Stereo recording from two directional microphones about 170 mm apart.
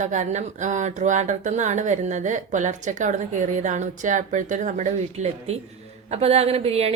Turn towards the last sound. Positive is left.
turn(degrees=-35)  # may be behind; listen again after turning